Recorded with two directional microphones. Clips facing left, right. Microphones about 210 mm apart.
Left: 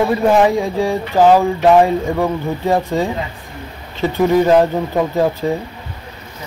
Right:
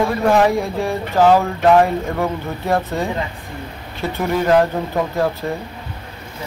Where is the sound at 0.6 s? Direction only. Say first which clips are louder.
Left 4 dB; 15° left (ahead or behind).